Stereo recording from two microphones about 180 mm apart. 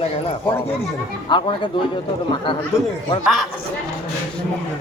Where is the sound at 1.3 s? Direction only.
25° left (ahead or behind).